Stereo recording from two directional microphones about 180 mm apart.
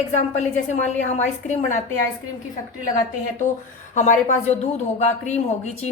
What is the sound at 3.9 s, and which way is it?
A woman's voice, 45° left (ahead or behind).